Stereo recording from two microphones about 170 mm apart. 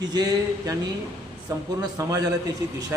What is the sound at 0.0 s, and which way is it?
A man's voice, 25° right (ahead or behind).